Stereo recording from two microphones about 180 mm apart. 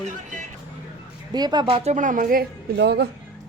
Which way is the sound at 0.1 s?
45° right (ahead or behind).